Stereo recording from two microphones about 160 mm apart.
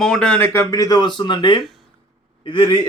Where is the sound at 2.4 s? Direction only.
30° left (ahead or behind).